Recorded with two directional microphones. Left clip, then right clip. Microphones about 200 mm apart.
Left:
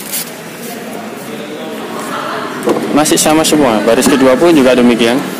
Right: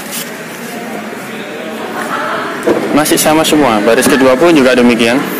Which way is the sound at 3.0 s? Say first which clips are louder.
Left 1 dB; 5° left (ahead or behind).